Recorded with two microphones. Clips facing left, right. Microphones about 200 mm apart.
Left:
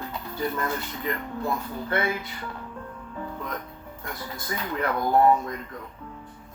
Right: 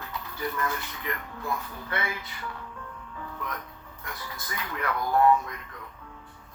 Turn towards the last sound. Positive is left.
turn(degrees=30)  # may be behind; listen again after turning